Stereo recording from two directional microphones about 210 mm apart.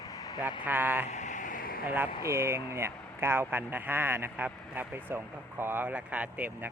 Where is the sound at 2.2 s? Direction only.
15° right (ahead or behind).